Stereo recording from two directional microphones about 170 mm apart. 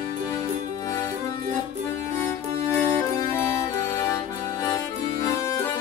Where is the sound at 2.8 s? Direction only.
15° left (ahead or behind).